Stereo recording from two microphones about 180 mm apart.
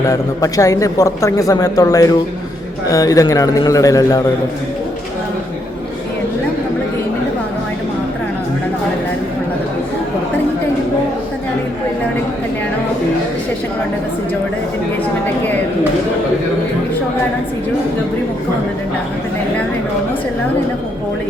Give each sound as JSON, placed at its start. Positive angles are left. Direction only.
{"t": 0.1, "sound": "a man's voice", "side_deg": 20}